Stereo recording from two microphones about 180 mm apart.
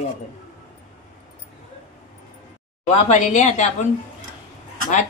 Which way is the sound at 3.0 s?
40° left (ahead or behind).